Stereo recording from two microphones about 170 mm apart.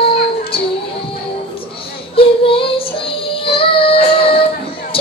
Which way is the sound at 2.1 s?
30° left (ahead or behind).